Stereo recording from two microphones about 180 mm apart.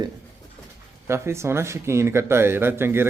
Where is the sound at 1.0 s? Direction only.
15° right (ahead or behind).